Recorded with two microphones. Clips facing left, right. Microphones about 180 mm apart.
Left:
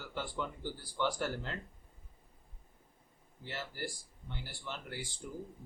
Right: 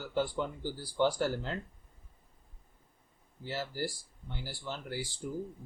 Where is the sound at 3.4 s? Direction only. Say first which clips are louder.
Right 6 dB; 35° right (ahead or behind).